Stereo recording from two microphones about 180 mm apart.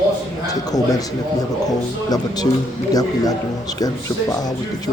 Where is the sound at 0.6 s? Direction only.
20° left (ahead or behind).